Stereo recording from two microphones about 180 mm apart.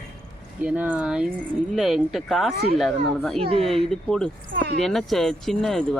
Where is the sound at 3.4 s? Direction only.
30° right (ahead or behind).